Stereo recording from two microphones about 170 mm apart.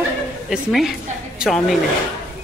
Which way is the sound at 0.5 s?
Centre (ahead or behind).